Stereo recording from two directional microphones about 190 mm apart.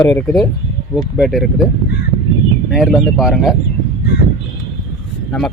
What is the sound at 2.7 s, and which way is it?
Speech, centre (ahead or behind).